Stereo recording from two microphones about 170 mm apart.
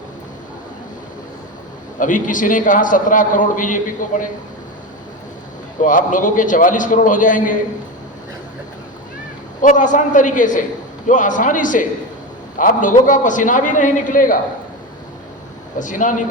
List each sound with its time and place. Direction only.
2.0 s a man's voice: 50° left (ahead or behind)
5.8 s a man's voice: 50° left (ahead or behind)
9.6 s a man's voice: 50° left (ahead or behind)
15.8 s a man's voice: 50° left (ahead or behind)